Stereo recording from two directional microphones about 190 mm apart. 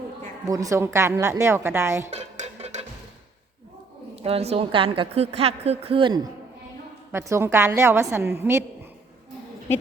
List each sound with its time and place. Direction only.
0.4 s a woman's voice: 15° right (ahead or behind)
2.0 s music: 35° right (ahead or behind)
4.1 s a woman's voice: 35° right (ahead or behind)
7.1 s a woman's voice: 15° right (ahead or behind)